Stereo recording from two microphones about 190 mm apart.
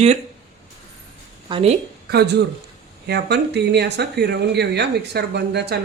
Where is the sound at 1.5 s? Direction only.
25° right (ahead or behind).